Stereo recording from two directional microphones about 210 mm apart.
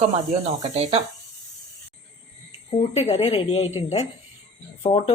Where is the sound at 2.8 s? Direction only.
30° left (ahead or behind).